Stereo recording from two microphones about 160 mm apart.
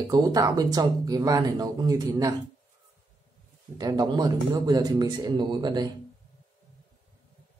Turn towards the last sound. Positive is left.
turn(degrees=-25)  # may be behind; listen again after turning